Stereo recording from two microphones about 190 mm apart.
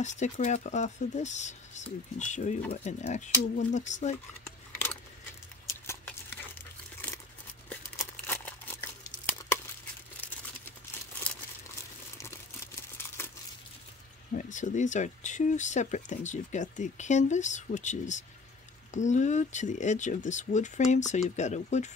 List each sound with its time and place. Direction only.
0.0 s speech: 40° left (ahead or behind)
5.9 s a sound: 10° left (ahead or behind)
7.7 s crumpling: 10° left (ahead or behind)
14.3 s speech: 45° left (ahead or behind)